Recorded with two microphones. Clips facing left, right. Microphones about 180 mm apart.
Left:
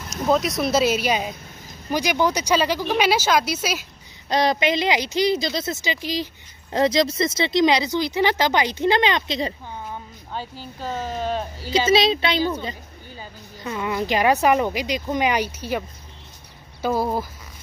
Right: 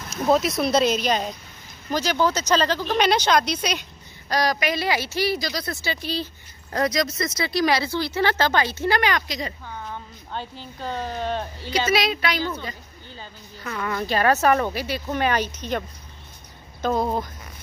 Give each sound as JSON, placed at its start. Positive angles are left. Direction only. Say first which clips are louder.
{"t": 0.1, "sound": "speech", "louder": "even", "side_deg": 0}
{"t": 4.3, "sound": "speech", "louder": "left 3 dB", "side_deg": 25}
{"t": 6.7, "sound": "speech", "louder": "left 4 dB", "side_deg": 25}
{"t": 9.8, "sound": "speech", "louder": "left 1 dB", "side_deg": 5}
{"t": 11.7, "sound": "speech", "louder": "left 4 dB", "side_deg": 25}
{"t": 16.8, "sound": "speech", "louder": "left 1 dB", "side_deg": 5}